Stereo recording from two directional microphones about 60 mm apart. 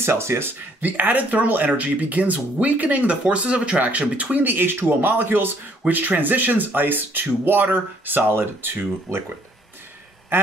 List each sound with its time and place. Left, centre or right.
0.0 s speech: right
10.3 s quack: right